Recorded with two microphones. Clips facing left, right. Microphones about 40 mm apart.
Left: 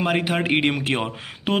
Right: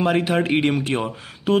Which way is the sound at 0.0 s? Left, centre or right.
Centre.